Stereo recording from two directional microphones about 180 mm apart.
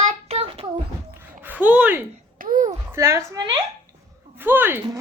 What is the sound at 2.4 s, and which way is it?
Speech, 45° right (ahead or behind).